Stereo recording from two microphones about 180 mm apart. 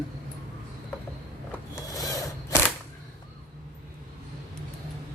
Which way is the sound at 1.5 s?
15° left (ahead or behind).